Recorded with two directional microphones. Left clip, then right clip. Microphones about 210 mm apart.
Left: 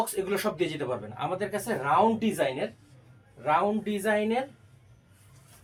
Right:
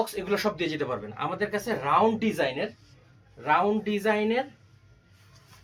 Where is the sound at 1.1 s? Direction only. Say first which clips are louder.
Right 3 dB; 10° left (ahead or behind).